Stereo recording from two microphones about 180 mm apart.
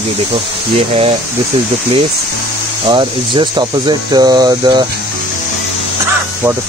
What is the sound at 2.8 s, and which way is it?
Speech, 25° right (ahead or behind).